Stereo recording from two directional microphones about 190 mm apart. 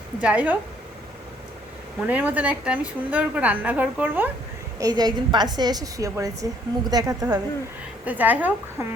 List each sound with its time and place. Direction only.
0.2 s a woman's voice: 5° right (ahead or behind)
2.0 s a woman's voice: 5° right (ahead or behind)
4.8 s a woman's voice: 20° right (ahead or behind)
8.0 s a woman's voice: 10° right (ahead or behind)